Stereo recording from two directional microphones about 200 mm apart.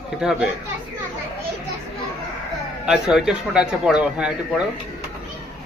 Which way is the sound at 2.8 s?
5° right (ahead or behind).